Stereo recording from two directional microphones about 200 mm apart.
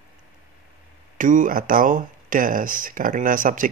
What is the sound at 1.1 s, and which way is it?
Speech, 40° right (ahead or behind).